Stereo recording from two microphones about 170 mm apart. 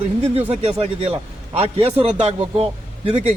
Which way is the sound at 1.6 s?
35° right (ahead or behind).